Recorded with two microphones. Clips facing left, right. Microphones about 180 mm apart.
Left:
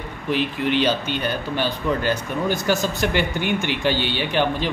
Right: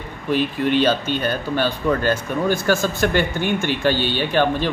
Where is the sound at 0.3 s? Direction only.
15° left (ahead or behind).